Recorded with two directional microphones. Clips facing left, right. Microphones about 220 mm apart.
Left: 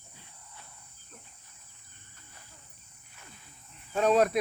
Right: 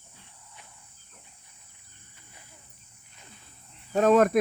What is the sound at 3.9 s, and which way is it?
Speech, 45° right (ahead or behind).